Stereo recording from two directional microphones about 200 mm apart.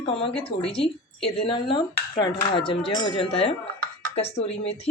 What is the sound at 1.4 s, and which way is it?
Dishes, 25° left (ahead or behind).